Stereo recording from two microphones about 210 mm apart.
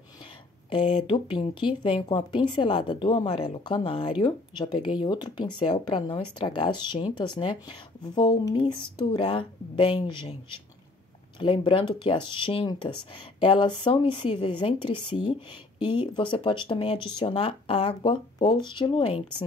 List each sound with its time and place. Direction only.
0.2 s speech: 25° left (ahead or behind)